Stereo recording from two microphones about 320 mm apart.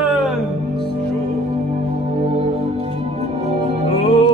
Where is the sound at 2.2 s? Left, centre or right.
Centre.